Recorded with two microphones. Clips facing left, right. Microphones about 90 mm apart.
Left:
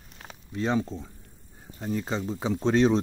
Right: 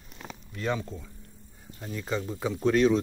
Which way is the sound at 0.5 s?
25° left (ahead or behind).